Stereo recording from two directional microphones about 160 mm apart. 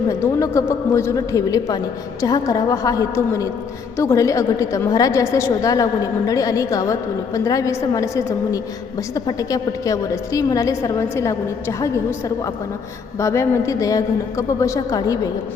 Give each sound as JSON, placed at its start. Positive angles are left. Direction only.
{"t": 0.1, "sound": "a woman's voice", "side_deg": 20}
{"t": 13.1, "sound": "a woman's voice", "side_deg": 20}